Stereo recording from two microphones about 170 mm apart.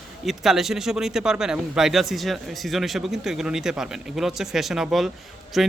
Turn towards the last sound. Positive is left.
turn(degrees=0)  # may be behind; listen again after turning